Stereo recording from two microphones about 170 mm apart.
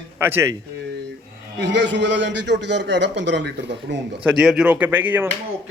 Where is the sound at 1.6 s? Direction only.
90° right.